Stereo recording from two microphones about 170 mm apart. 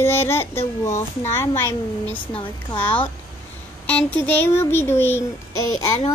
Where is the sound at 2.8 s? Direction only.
10° left (ahead or behind).